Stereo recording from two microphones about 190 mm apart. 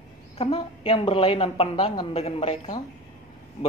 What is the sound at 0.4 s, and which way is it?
A woman's voice, 30° left (ahead or behind).